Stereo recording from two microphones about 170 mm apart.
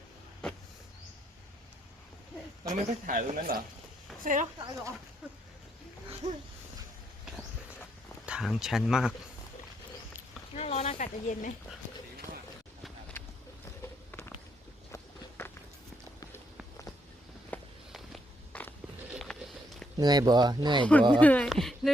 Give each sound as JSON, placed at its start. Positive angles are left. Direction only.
{"t": 0.4, "sound": "power windows", "side_deg": 5}
{"t": 2.7, "sound": "speech", "side_deg": -45}
{"t": 4.5, "sound": "speech", "side_deg": -20}
{"t": 6.2, "sound": "speech", "side_deg": -40}
{"t": 8.3, "sound": "speech", "side_deg": -5}
{"t": 10.5, "sound": "a sound", "side_deg": 40}
{"t": 13.8, "sound": "walk", "side_deg": 15}
{"t": 17.5, "sound": "walk", "side_deg": 10}
{"t": 19.1, "sound": "a sound", "side_deg": 0}
{"t": 20.0, "sound": "speech", "side_deg": -25}
{"t": 21.2, "sound": "speech", "side_deg": 10}